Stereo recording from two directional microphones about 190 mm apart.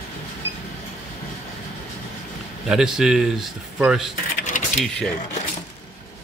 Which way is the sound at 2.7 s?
5° right (ahead or behind).